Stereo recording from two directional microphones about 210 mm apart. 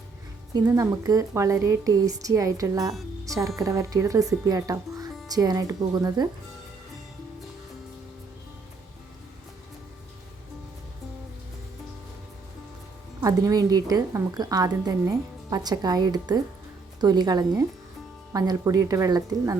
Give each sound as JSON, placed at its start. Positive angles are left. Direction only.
{"t": 0.5, "sound": "a woman's voice", "side_deg": -15}
{"t": 13.2, "sound": "a woman's voice", "side_deg": -15}